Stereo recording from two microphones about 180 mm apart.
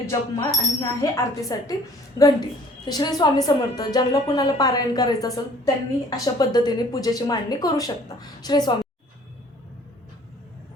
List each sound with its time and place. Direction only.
0.1 s a woman's voice: 20° left (ahead or behind)